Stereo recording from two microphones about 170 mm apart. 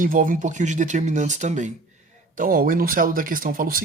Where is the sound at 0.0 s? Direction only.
55° right (ahead or behind).